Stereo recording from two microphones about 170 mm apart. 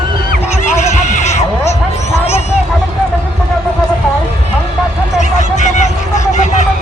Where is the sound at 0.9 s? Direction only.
45° left (ahead or behind).